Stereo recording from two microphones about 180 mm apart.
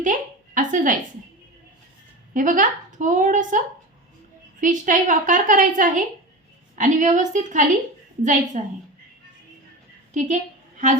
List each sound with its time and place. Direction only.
0.0 s a woman's voice: 45° right (ahead or behind)
2.3 s a woman's voice: 45° right (ahead or behind)
4.6 s a woman's voice: 45° right (ahead or behind)